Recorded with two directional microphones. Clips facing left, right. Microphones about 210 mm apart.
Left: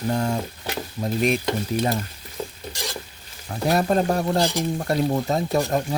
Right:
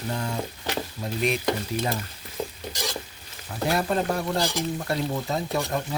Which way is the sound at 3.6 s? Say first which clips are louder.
Left 4 dB; 40° left (ahead or behind).